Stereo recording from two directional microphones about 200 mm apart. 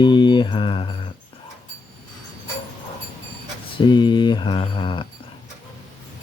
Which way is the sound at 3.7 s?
25° left (ahead or behind).